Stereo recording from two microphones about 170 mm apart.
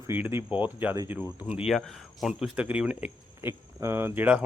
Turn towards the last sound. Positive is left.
turn(degrees=-10)  # may be behind; listen again after turning